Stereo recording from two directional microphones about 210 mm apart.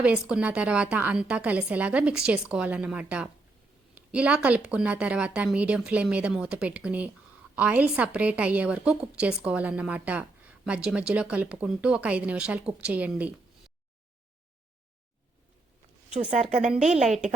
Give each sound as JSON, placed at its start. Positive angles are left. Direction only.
{"t": 0.0, "sound": "a woman's voice", "side_deg": -5}
{"t": 3.9, "sound": "a sound", "side_deg": -5}
{"t": 4.4, "sound": "a woman's voice", "side_deg": -5}
{"t": 16.3, "sound": "a woman's voice", "side_deg": -35}
{"t": 16.9, "sound": "a woman's voice", "side_deg": 0}